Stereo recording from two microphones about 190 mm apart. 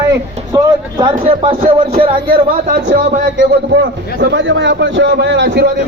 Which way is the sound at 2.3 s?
50° right (ahead or behind).